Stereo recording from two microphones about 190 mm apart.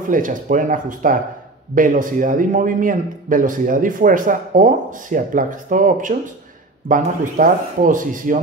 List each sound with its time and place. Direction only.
0.1 s a man's voice: 45° right (ahead or behind)